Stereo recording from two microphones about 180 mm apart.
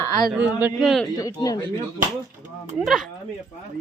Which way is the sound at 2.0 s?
45° right (ahead or behind).